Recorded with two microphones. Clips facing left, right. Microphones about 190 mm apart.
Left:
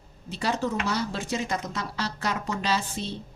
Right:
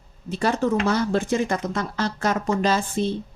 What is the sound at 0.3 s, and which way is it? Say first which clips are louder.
A woman's voice: right 6 dB; 50° right (ahead or behind).